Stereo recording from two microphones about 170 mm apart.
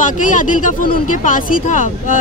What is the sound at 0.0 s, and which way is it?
Speech, 50° left (ahead or behind).